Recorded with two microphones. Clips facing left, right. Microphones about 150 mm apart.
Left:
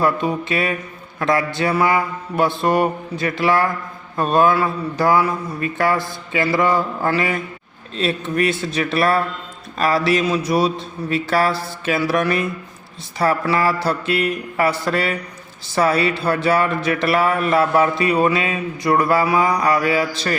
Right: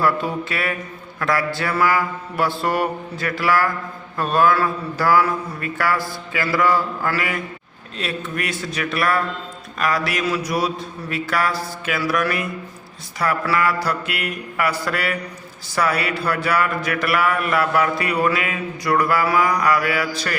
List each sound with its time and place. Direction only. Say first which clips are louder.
0.0 s speech: left 2 dB; 20° left (ahead or behind)